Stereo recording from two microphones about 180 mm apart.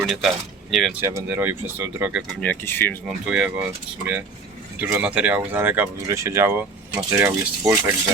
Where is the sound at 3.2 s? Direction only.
5° right (ahead or behind).